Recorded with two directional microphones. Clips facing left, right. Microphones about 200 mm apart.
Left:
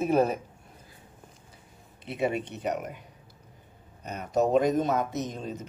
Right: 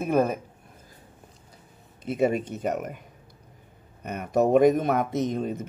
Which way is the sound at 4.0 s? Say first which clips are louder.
Right 3 dB; 60° right (ahead or behind).